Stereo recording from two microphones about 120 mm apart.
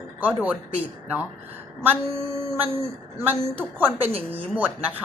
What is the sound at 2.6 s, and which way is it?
A woman's voice, 20° right (ahead or behind).